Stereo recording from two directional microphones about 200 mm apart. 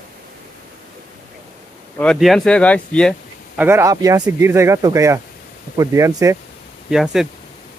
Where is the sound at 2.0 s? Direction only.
Centre (ahead or behind).